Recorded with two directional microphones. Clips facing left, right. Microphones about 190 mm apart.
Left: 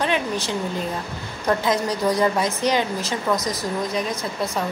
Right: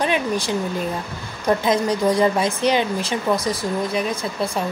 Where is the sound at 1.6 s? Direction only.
25° right (ahead or behind).